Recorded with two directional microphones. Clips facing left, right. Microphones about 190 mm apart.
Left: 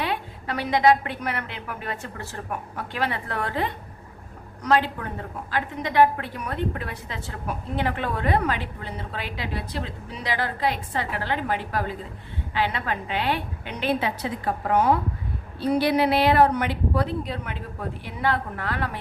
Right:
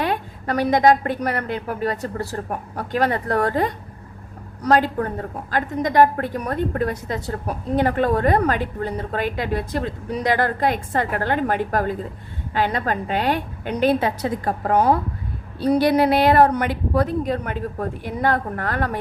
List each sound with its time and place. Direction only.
0.0 s a woman's voice: 45° right (ahead or behind)